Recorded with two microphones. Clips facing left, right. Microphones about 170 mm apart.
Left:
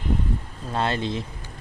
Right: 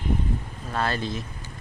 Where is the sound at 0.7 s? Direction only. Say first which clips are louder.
Left 2 dB; 25° left (ahead or behind).